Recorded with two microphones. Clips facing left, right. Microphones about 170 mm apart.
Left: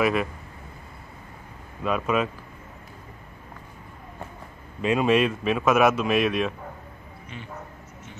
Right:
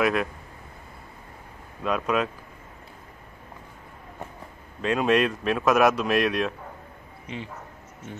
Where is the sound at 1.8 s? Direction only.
Centre (ahead or behind).